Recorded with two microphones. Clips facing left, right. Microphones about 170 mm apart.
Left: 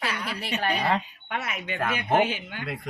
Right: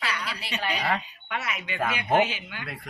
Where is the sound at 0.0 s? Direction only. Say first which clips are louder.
Left 2 dB; 50° left (ahead or behind).